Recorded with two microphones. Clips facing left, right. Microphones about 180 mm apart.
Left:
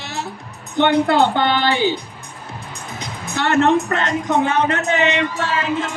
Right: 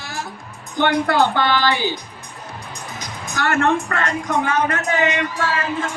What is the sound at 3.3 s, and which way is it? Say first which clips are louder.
A man's voice: left 3 dB; 20° left (ahead or behind).